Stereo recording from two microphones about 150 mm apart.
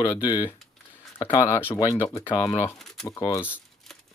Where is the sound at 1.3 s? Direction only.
20° left (ahead or behind).